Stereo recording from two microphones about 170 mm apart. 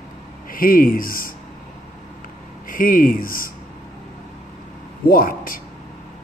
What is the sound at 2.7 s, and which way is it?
Speech, 55° left (ahead or behind).